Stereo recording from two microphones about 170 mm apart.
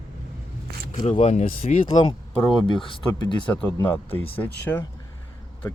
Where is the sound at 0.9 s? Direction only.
45° left (ahead or behind).